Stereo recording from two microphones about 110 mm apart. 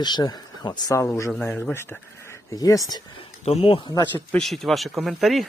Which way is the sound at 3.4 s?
65° left (ahead or behind).